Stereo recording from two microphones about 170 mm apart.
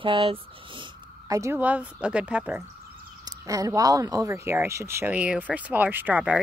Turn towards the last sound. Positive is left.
turn(degrees=-5)  # may be behind; listen again after turning